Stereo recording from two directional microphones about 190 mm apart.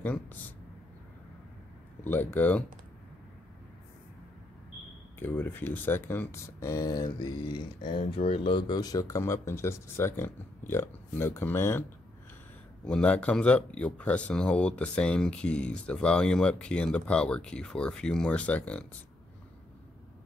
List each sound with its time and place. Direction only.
0.0 s speech: 10° left (ahead or behind)
2.0 s speech: 10° left (ahead or behind)
5.2 s speech: 10° left (ahead or behind)
12.8 s speech: 5° left (ahead or behind)